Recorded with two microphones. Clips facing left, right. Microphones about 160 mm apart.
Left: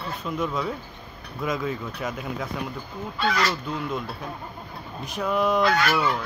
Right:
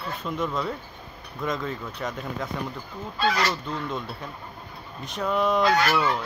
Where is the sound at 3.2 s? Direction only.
35° right (ahead or behind).